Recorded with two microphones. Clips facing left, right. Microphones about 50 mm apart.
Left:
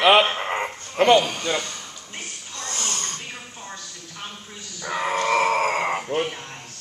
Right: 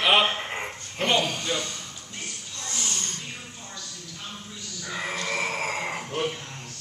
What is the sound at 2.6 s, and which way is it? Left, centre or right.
Snoring, left.